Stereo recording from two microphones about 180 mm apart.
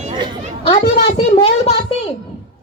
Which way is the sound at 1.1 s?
35° left (ahead or behind).